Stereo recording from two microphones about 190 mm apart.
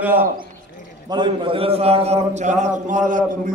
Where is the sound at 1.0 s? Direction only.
25° right (ahead or behind).